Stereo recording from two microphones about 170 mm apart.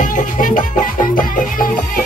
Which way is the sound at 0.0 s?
50° left (ahead or behind).